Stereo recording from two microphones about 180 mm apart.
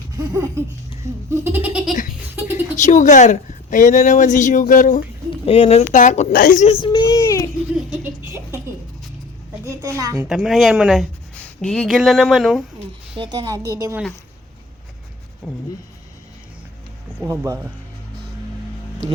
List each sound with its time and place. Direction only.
0.2 s laughter: 15° right (ahead or behind)
1.0 s goat: 15° right (ahead or behind)
2.3 s a sound: 10° right (ahead or behind)
2.7 s a woman's voice: 45° left (ahead or behind)
5.5 s a woman's voice: 30° left (ahead or behind)
6.8 s a sound: 20° left (ahead or behind)
8.0 s baby laughter: 15° right (ahead or behind)
10.0 s a woman's voice: 20° right (ahead or behind)
10.2 s speech: 5° right (ahead or behind)
13.1 s a woman's voice: 25° right (ahead or behind)
15.4 s speech: 5° right (ahead or behind)